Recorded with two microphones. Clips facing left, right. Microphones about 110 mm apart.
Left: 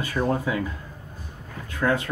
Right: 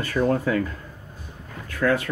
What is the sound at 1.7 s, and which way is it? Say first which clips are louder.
Speech: right 2 dB; 25° left (ahead or behind).